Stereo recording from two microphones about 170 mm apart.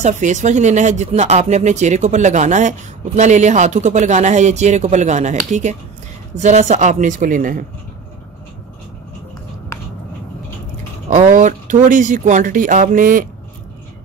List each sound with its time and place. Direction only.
0.0 s speech: 45° right (ahead or behind)
11.1 s speech: 45° right (ahead or behind)